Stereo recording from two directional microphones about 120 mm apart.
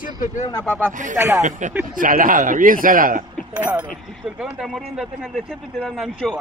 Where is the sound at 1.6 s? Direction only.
90° right.